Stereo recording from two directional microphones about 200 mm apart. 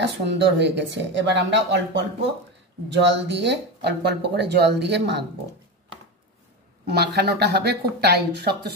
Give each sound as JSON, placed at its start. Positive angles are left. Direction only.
{"t": 0.3, "sound": "speech", "side_deg": -60}
{"t": 6.9, "sound": "speech", "side_deg": -55}